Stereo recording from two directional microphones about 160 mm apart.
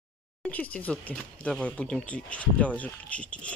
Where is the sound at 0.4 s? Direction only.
10° left (ahead or behind).